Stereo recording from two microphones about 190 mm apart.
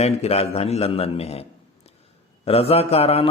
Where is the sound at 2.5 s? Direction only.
30° left (ahead or behind).